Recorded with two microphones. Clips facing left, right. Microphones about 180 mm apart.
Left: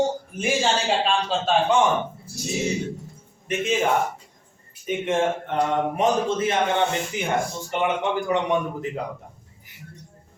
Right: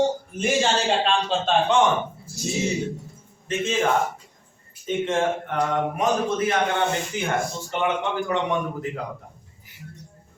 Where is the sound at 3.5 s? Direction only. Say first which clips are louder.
Even; 15° left (ahead or behind).